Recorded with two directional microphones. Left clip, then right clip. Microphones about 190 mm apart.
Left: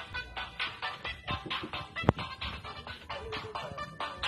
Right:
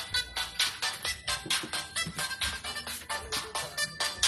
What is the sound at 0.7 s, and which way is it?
Music, 40° right (ahead or behind).